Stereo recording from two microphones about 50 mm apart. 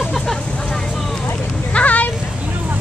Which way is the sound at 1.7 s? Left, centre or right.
Left.